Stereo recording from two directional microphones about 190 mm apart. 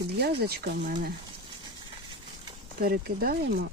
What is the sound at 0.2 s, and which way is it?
Speech, 55° right (ahead or behind).